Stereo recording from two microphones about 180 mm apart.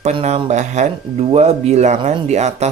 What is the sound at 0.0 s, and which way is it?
Speech, 35° right (ahead or behind).